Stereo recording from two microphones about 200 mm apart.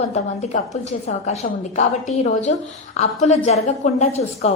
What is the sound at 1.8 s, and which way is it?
A woman's voice, 35° left (ahead or behind).